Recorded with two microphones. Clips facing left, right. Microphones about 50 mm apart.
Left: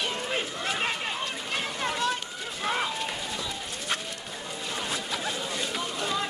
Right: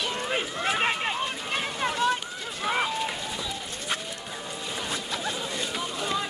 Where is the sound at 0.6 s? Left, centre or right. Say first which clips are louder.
Right 7 dB; right.